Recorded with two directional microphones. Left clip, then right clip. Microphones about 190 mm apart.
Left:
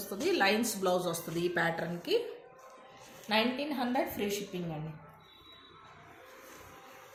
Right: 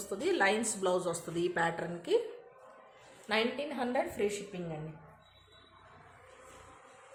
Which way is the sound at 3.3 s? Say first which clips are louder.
Left 2 dB; 35° right (ahead or behind).